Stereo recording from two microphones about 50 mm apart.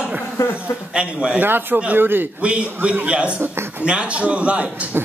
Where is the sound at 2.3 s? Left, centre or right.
Right.